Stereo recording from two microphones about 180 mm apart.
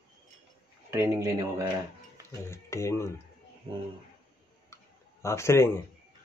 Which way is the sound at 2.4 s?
15° left (ahead or behind).